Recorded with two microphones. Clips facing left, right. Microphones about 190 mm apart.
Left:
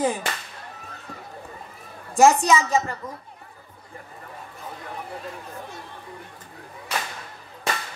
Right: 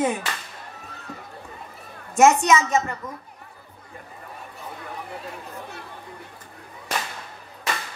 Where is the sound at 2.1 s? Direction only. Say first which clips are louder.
Even; 30° left (ahead or behind).